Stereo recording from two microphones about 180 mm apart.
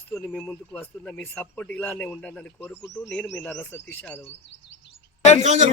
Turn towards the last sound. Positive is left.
turn(degrees=-45)  # may be behind; listen again after turning